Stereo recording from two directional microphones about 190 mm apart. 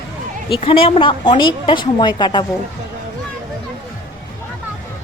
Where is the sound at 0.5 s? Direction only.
30° left (ahead or behind).